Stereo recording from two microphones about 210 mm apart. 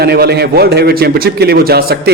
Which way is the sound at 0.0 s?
50° right (ahead or behind).